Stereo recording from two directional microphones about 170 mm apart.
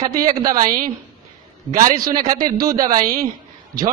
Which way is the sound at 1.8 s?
20° right (ahead or behind).